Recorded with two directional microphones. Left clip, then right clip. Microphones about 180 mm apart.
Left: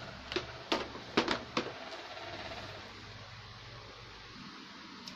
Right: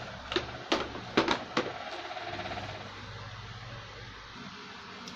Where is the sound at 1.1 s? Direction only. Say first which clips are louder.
Right 4 dB; 20° left (ahead or behind).